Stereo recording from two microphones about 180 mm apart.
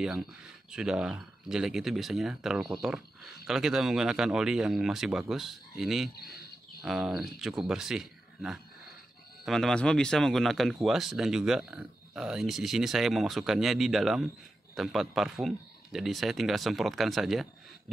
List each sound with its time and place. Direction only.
0.0 s speech: 5° right (ahead or behind)
6.1 s speech: 60° left (ahead or behind)
6.8 s speech: centre (ahead or behind)